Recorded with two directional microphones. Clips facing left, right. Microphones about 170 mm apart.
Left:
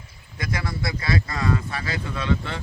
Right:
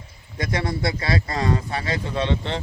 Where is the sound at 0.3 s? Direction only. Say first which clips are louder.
Right 4 dB; 30° right (ahead or behind).